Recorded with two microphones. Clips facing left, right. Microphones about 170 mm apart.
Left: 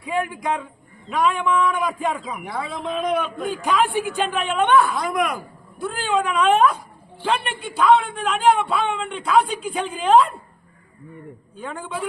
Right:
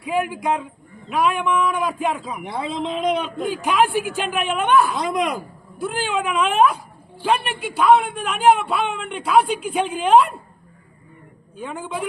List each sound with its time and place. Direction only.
0.0 s a woman's voice: 5° right (ahead or behind)
2.4 s a man's voice: 25° right (ahead or behind)
3.5 s a woman's voice: 10° right (ahead or behind)
4.9 s a man's voice: 25° right (ahead or behind)
5.8 s a woman's voice: 5° right (ahead or behind)
11.5 s a woman's voice: 10° right (ahead or behind)